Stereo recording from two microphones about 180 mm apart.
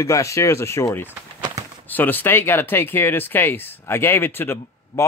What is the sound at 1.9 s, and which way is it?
Speech, 10° left (ahead or behind).